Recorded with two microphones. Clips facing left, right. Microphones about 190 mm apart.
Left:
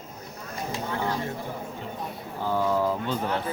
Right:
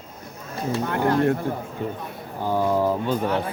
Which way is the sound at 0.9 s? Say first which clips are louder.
Right 11 dB; 65° right (ahead or behind).